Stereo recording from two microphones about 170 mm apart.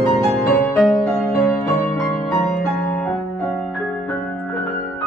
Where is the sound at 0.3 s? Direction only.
10° left (ahead or behind).